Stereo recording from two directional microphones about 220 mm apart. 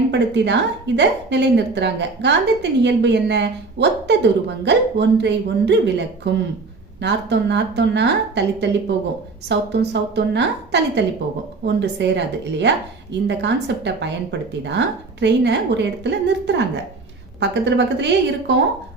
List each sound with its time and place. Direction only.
0.1 s a woman's voice: 55° right (ahead or behind)